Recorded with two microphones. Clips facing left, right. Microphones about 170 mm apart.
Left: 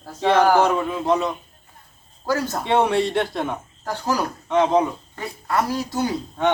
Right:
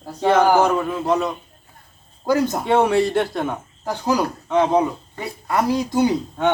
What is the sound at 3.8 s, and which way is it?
Speech, 10° right (ahead or behind).